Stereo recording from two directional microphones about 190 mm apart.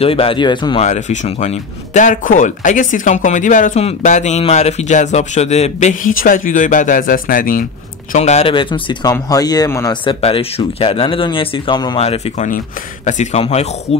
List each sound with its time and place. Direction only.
0.0 s speech: 30° left (ahead or behind)
0.8 s speech: 40° left (ahead or behind)
8.1 s speech: 35° left (ahead or behind); by 9.9 s 15° left (ahead or behind)
10.0 s speech: 30° left (ahead or behind)
12.4 s speech: 40° left (ahead or behind)